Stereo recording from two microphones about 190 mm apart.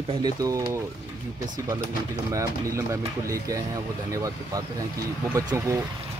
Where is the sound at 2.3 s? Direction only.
15° right (ahead or behind).